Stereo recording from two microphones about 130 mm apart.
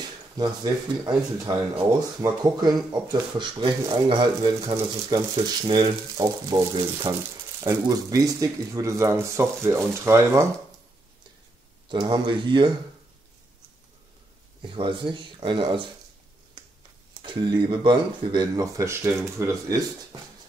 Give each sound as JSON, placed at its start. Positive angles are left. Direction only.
{"t": 0.4, "sound": "speech", "side_deg": -30}
{"t": 11.9, "sound": "speech", "side_deg": -35}
{"t": 14.6, "sound": "speech", "side_deg": -40}
{"t": 17.2, "sound": "speech", "side_deg": -40}